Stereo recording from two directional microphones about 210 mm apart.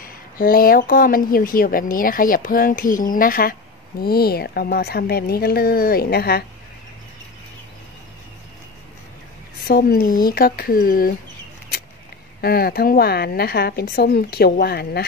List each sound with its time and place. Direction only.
0.0 s speech: 45° left (ahead or behind)
9.6 s speech: 45° left (ahead or behind)
12.4 s speech: 45° left (ahead or behind)